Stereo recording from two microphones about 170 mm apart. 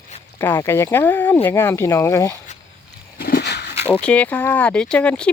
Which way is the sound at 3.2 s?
65° left (ahead or behind).